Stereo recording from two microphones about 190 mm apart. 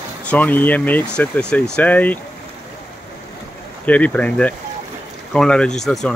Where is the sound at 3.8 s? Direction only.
10° left (ahead or behind).